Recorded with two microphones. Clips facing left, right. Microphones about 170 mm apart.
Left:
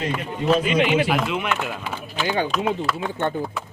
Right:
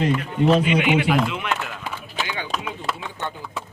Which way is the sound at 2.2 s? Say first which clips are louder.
Left 8 dB; 45° left (ahead or behind).